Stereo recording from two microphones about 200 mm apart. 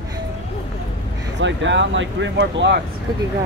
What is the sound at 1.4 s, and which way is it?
Speech, 65° right (ahead or behind).